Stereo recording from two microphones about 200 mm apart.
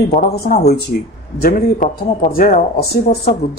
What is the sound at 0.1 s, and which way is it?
Speech, 45° left (ahead or behind).